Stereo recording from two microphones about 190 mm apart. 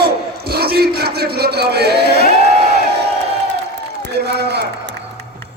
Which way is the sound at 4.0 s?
60° right (ahead or behind).